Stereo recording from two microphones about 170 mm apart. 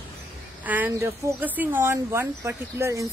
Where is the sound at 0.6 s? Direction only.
10° right (ahead or behind).